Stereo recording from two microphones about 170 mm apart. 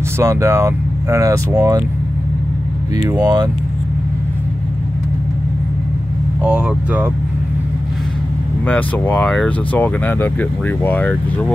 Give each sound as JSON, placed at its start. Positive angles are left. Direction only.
{"t": 0.2, "sound": "speech", "side_deg": -15}
{"t": 3.0, "sound": "speech", "side_deg": -20}
{"t": 6.4, "sound": "speech", "side_deg": -5}
{"t": 8.6, "sound": "speech", "side_deg": 10}